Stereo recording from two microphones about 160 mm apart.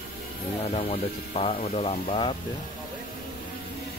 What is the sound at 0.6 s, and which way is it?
Speech, 45° left (ahead or behind).